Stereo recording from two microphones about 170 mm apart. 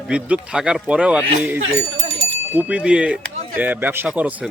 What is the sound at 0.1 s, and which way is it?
A man's voice, 5° right (ahead or behind).